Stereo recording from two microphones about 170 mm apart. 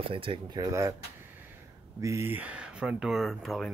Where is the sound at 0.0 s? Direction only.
30° right (ahead or behind).